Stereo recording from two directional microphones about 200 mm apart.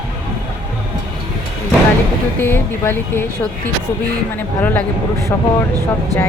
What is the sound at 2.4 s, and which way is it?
Speech, 10° left (ahead or behind).